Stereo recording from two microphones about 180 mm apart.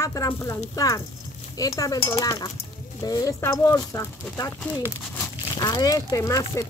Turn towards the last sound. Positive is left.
turn(degrees=15)  # may be behind; listen again after turning